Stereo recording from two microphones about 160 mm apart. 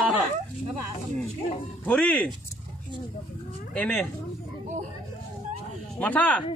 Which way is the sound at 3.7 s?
10° left (ahead or behind).